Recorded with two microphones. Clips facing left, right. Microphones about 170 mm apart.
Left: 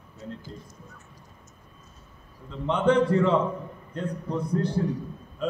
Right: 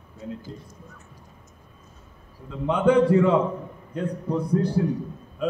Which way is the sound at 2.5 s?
10° right (ahead or behind).